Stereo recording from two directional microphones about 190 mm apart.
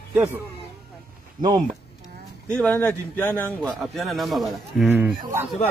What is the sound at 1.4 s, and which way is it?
Speech, 20° right (ahead or behind).